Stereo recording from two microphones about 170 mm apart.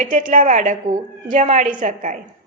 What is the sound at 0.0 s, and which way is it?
A woman's voice, 50° right (ahead or behind).